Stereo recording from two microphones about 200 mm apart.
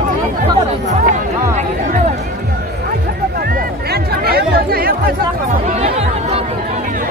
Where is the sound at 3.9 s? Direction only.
50° right (ahead or behind).